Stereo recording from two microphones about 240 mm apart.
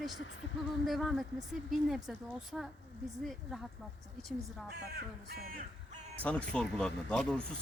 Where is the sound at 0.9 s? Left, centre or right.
Centre.